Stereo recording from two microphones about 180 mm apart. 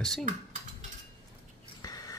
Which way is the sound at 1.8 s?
20° left (ahead or behind).